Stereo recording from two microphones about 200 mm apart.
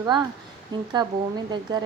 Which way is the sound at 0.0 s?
20° right (ahead or behind).